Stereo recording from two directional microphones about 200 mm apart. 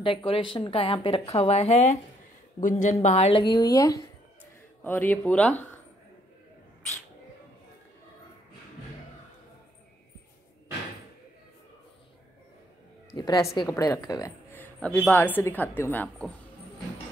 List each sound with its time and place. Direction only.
0.0 s a woman's voice: 25° left (ahead or behind); by 5.7 s 5° left (ahead or behind)
13.1 s a woman's voice: 20° left (ahead or behind)